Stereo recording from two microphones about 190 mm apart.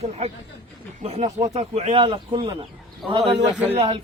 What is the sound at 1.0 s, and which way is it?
Speech, 35° right (ahead or behind).